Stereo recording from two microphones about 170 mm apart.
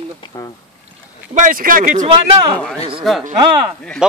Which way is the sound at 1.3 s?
50° right (ahead or behind).